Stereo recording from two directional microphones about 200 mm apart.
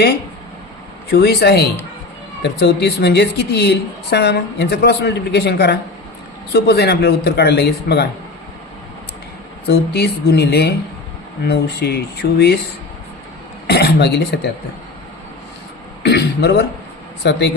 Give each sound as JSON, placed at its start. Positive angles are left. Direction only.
{"t": 1.1, "sound": "a woman's voice", "side_deg": 55}
{"t": 9.6, "sound": "a woman's voice", "side_deg": 55}
{"t": 13.7, "sound": "a woman's voice", "side_deg": 55}
{"t": 16.0, "sound": "a woman's voice", "side_deg": 55}